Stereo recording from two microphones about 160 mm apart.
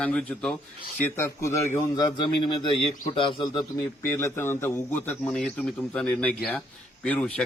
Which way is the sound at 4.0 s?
15° left (ahead or behind).